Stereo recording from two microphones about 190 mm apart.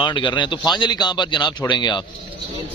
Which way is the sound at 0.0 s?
25° left (ahead or behind).